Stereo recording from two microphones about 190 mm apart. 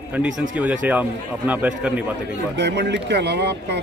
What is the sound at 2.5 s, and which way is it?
Speech, 65° right (ahead or behind).